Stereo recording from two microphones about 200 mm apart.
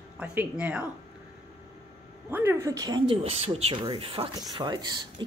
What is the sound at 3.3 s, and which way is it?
Speech, 30° right (ahead or behind).